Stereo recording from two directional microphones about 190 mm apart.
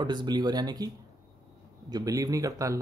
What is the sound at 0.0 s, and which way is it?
Speech, 25° right (ahead or behind).